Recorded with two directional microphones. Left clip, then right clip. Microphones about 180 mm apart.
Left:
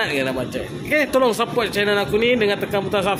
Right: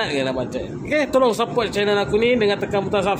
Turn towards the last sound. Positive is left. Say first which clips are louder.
# even
turn(degrees=-5)  # may be behind; listen again after turning